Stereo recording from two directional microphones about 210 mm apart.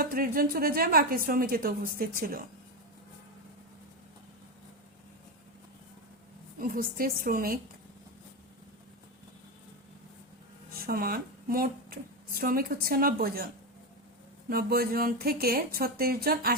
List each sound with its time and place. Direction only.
0.0 s a woman's voice: 45° right (ahead or behind)
6.6 s a woman's voice: 45° right (ahead or behind)
10.8 s speech: 45° right (ahead or behind)
14.5 s a woman's voice: 45° right (ahead or behind)